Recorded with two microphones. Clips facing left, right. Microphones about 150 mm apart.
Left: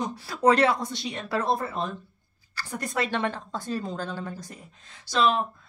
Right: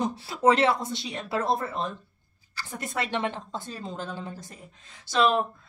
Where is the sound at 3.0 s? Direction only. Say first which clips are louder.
Left 1 dB; 20° right (ahead or behind).